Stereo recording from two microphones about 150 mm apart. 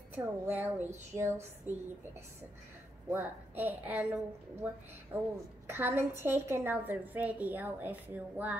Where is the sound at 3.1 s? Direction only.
15° right (ahead or behind).